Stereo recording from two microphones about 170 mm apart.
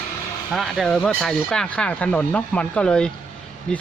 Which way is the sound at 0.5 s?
Centre (ahead or behind).